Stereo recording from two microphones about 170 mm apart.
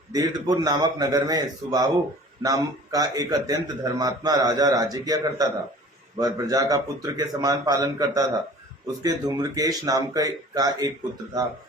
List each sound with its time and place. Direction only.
0.1 s a man's voice: 20° right (ahead or behind)